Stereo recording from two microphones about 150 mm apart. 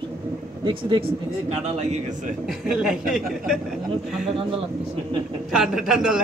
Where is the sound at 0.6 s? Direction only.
35° right (ahead or behind).